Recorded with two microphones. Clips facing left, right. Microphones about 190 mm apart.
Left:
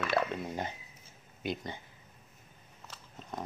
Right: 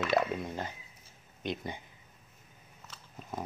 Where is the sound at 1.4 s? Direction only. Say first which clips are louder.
Even; 5° left (ahead or behind).